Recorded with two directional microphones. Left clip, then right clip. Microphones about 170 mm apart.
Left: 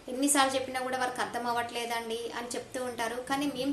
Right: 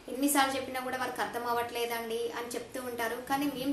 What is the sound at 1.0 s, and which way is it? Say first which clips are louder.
Speech: left 2 dB; 35° left (ahead or behind).